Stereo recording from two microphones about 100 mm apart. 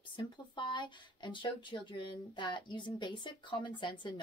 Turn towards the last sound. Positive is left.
turn(degrees=50)  # may be behind; listen again after turning